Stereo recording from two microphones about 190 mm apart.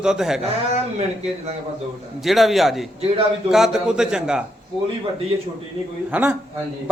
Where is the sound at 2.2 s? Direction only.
Centre (ahead or behind).